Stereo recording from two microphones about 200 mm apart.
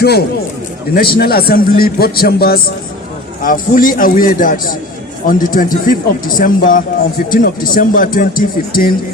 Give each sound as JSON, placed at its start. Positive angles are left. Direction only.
{"t": 0.0, "sound": "a man's voice", "side_deg": 55}